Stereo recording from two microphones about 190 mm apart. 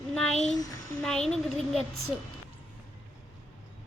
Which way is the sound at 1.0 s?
Centre (ahead or behind).